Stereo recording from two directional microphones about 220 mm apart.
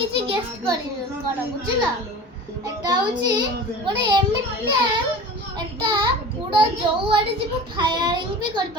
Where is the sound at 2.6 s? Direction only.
20° right (ahead or behind).